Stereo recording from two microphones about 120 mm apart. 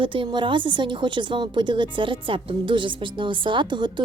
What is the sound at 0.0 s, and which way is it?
A woman's voice, 45° right (ahead or behind).